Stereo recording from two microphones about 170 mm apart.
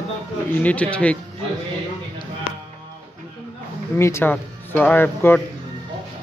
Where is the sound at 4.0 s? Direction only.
15° left (ahead or behind).